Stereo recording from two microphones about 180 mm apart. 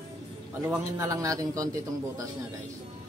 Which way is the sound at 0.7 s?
15° right (ahead or behind).